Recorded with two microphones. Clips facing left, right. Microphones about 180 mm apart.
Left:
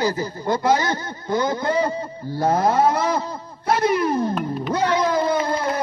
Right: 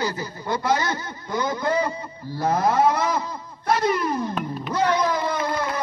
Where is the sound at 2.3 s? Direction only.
25° left (ahead or behind).